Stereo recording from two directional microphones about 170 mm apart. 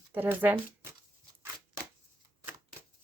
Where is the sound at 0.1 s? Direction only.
10° right (ahead or behind).